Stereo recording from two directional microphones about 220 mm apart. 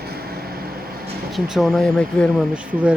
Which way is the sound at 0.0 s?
45° right (ahead or behind).